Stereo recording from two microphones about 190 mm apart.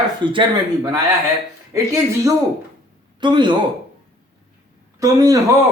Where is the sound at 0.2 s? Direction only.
25° right (ahead or behind).